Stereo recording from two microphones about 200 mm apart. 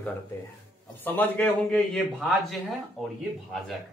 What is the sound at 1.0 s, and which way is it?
A man's voice, 10° left (ahead or behind).